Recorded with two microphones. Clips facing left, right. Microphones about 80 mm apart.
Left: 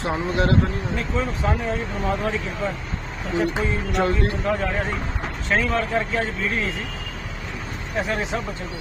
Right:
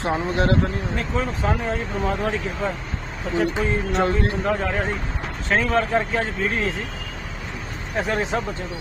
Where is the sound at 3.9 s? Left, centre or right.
Right.